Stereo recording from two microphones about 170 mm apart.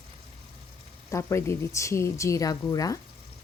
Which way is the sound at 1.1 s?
15° left (ahead or behind).